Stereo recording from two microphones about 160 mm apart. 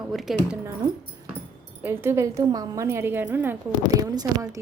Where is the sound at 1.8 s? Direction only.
15° right (ahead or behind).